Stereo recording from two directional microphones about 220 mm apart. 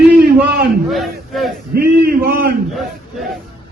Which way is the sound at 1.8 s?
45° right (ahead or behind).